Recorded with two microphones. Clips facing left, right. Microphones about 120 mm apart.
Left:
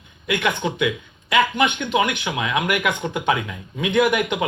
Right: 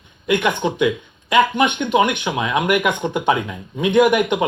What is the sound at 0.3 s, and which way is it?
Speech, 30° right (ahead or behind).